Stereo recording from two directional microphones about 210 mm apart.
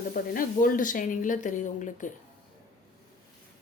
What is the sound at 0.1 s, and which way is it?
Speech, 40° left (ahead or behind).